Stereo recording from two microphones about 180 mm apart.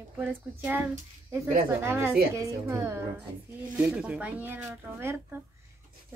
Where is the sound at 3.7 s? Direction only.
5° right (ahead or behind).